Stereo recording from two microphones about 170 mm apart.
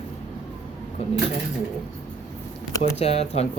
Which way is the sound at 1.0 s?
35° left (ahead or behind).